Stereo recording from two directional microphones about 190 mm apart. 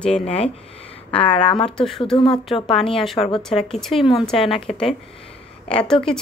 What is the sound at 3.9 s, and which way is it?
Speech, 30° left (ahead or behind).